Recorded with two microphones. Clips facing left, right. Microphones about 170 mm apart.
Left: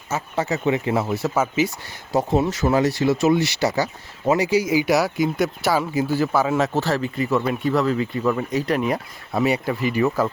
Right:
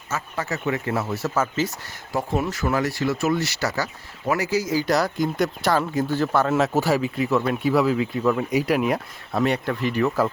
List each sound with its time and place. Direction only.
0.1 s speech: 20° left (ahead or behind)
2.1 s speech: 20° left (ahead or behind); by 6.7 s centre (ahead or behind)
6.7 s speech: 10° right (ahead or behind)